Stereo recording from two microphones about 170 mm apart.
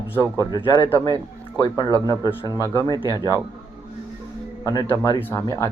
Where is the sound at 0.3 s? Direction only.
25° left (ahead or behind).